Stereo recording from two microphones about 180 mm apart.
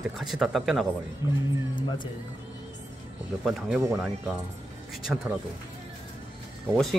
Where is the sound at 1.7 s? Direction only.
25° left (ahead or behind).